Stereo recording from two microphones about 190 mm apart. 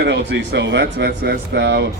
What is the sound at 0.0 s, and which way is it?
Speech, 60° right (ahead or behind).